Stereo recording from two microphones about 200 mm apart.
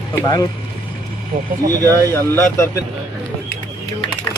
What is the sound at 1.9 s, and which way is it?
Speech, 10° left (ahead or behind).